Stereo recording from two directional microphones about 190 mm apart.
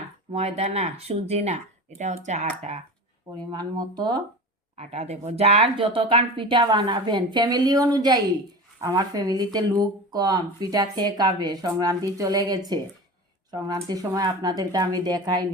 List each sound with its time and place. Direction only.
0.3 s speech: 35° right (ahead or behind)
4.8 s speech: 35° right (ahead or behind)